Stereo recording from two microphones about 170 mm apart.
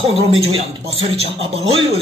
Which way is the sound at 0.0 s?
35° right (ahead or behind).